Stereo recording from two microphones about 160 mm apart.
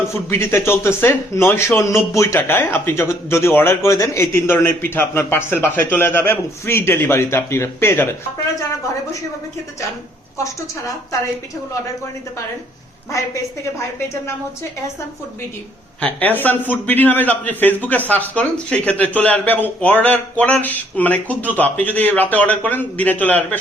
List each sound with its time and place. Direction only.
0.3 s speech: 15° left (ahead or behind)
10.3 s a woman's voice: 20° left (ahead or behind)
13.1 s a woman's voice: 20° left (ahead or behind)
16.0 s speech: 10° left (ahead or behind)